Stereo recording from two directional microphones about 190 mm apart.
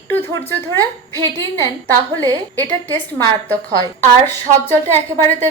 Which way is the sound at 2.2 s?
20° right (ahead or behind).